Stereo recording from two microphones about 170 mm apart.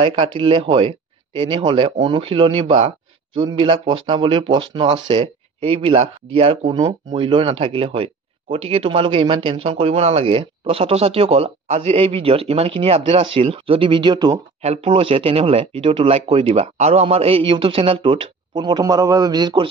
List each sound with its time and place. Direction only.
0.0 s speech: 30° right (ahead or behind)
14.6 s speech: 35° right (ahead or behind)